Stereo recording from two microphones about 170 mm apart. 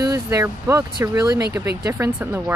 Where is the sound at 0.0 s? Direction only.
20° right (ahead or behind).